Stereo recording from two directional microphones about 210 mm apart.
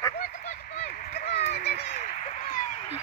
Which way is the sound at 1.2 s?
50° left (ahead or behind).